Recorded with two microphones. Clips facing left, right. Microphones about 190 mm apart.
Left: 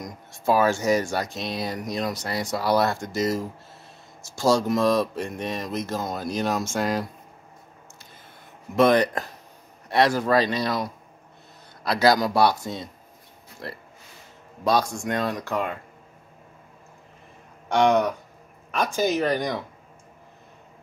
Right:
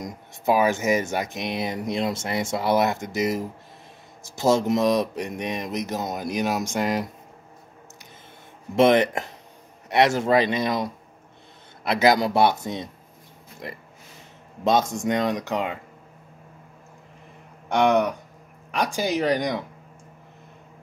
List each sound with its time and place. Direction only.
0.0 s speech: 20° right (ahead or behind)
8.7 s speech: 25° right (ahead or behind)
18.7 s speech: 15° right (ahead or behind)